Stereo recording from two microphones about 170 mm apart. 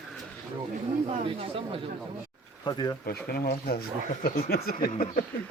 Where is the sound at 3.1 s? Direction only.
70° left (ahead or behind).